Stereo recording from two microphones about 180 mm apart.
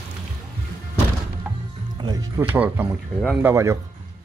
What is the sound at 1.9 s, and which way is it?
Speech, 20° right (ahead or behind).